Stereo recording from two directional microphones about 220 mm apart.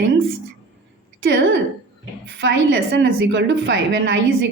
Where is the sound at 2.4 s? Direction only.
50° right (ahead or behind).